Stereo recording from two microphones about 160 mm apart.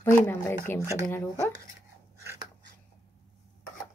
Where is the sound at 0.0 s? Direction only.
15° left (ahead or behind).